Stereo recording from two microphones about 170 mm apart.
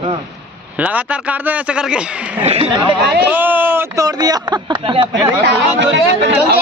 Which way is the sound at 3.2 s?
10° right (ahead or behind).